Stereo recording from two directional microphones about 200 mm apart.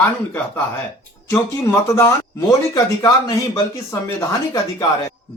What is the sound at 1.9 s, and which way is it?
Speech, 15° left (ahead or behind).